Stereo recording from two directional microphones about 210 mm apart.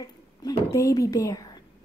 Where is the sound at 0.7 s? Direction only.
15° left (ahead or behind).